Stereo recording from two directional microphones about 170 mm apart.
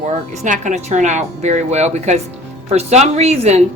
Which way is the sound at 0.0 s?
50° right (ahead or behind).